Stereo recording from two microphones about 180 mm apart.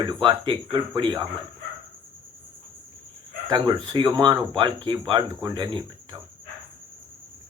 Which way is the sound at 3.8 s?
25° right (ahead or behind).